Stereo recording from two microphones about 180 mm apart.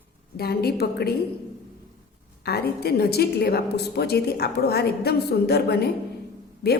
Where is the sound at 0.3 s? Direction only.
60° left (ahead or behind).